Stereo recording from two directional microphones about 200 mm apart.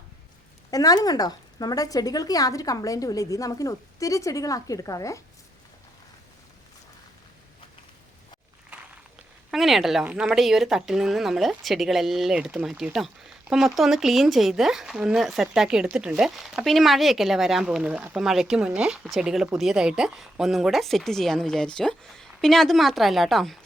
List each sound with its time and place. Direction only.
0.7 s speech: 20° left (ahead or behind)
9.5 s speech: centre (ahead or behind)